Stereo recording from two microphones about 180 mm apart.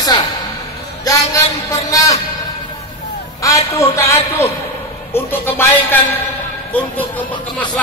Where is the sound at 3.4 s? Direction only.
20° left (ahead or behind).